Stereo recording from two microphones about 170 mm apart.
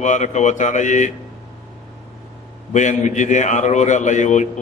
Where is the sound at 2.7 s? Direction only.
45° left (ahead or behind).